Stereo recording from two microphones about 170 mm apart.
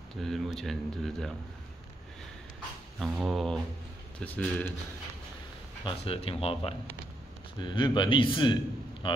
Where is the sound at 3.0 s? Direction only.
Centre (ahead or behind).